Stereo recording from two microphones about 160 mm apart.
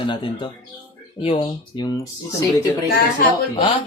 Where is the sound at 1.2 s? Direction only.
35° left (ahead or behind).